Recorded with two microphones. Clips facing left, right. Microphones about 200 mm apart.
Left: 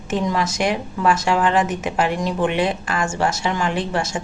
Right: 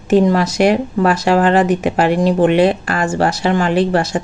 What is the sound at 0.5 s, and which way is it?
Speech, 65° right (ahead or behind).